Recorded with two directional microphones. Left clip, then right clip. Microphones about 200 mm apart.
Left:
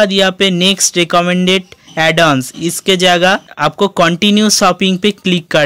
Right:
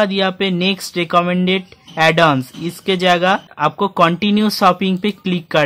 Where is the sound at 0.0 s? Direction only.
25° left (ahead or behind).